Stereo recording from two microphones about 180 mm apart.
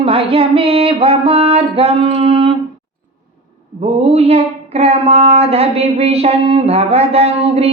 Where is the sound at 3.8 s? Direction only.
35° right (ahead or behind).